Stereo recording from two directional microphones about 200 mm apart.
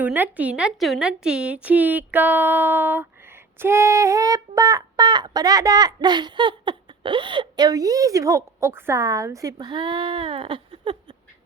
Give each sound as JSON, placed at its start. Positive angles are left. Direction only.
{"t": 0.0, "sound": "speech", "side_deg": -10}
{"t": 3.6, "sound": "child singing", "side_deg": -10}